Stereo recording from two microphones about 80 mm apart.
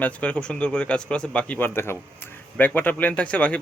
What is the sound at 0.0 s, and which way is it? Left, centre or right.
Speech, centre.